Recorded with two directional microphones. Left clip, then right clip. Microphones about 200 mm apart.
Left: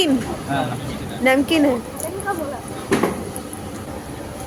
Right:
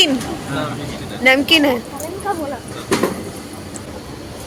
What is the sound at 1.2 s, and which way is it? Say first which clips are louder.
Speech: right 4 dB; 10° left (ahead or behind).